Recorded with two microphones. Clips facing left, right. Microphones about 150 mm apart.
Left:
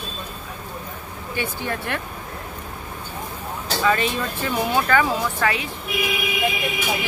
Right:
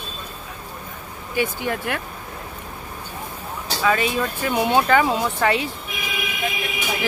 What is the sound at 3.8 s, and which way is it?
Speech, 10° right (ahead or behind).